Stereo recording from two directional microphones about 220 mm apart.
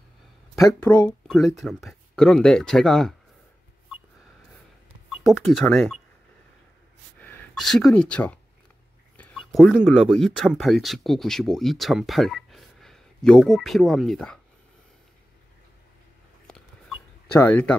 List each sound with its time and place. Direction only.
0.8 s speech: 15° left (ahead or behind)
1.2 s speech: centre (ahead or behind)
5.1 s speech: centre (ahead or behind)
7.2 s speech: 5° left (ahead or behind)
16.4 s a sound: 5° left (ahead or behind)